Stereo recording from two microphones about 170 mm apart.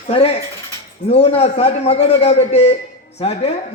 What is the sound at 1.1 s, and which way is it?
Speech, 35° left (ahead or behind).